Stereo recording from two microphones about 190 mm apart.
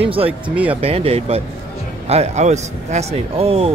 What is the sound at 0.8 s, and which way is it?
Speech, 30° right (ahead or behind).